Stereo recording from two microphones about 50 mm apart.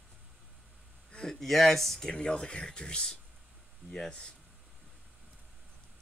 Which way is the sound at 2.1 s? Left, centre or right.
Centre.